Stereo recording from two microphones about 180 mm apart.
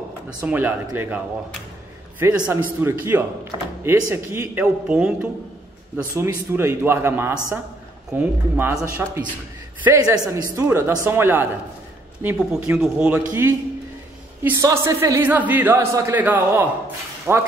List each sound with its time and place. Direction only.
0.4 s speech: 10° right (ahead or behind)